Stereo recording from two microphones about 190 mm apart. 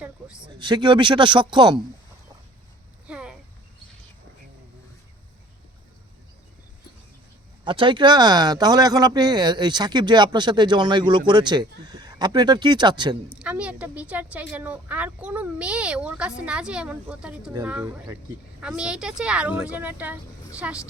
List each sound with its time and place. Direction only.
0.4 s speech: 25° right (ahead or behind)
3.1 s a sound: 5° right (ahead or behind)
7.6 s speech: 25° right (ahead or behind)
13.3 s a woman's voice: 5° right (ahead or behind)